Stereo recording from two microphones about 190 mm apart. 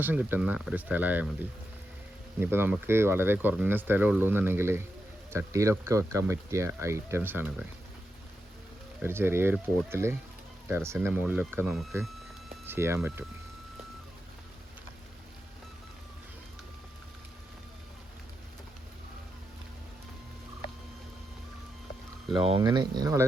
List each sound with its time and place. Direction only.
0.0 s speech: 10° right (ahead or behind)
9.0 s speech: 10° right (ahead or behind)
12.6 s speech: 10° right (ahead or behind)
22.4 s speech: 25° right (ahead or behind)